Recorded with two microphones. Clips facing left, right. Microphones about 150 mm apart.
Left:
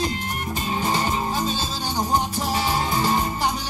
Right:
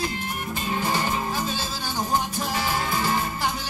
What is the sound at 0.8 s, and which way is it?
Music, 20° left (ahead or behind).